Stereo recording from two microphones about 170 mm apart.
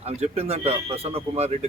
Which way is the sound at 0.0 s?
35° right (ahead or behind).